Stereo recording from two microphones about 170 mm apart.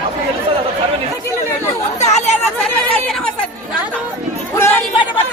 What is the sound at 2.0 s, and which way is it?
Chatter, 40° left (ahead or behind).